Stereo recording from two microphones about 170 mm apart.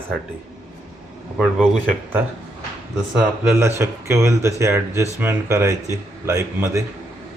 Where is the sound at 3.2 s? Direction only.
15° right (ahead or behind).